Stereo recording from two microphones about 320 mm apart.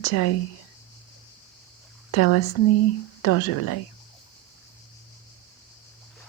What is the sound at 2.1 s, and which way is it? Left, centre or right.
Speech, left.